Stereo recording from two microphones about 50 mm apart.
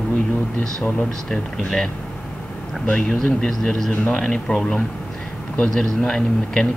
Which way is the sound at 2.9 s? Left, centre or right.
Centre.